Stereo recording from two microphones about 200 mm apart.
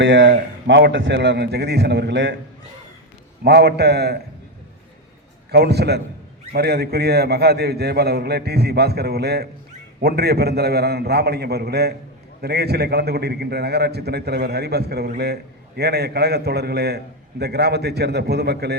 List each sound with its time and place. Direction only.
0.0 s a man's voice: 65° right (ahead or behind)
3.4 s a man's voice: 55° right (ahead or behind)
5.5 s a man's voice: 55° right (ahead or behind)